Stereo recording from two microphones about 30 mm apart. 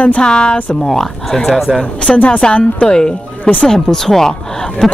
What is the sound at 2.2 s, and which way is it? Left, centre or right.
Speech, left.